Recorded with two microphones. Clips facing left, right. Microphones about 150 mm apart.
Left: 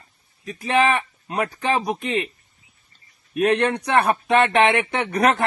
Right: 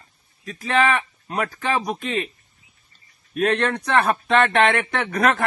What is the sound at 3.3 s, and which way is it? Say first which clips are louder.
Speech: left 2 dB; 15° left (ahead or behind).